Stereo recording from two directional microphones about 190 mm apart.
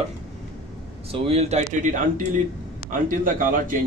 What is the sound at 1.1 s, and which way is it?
A man's voice, 30° right (ahead or behind).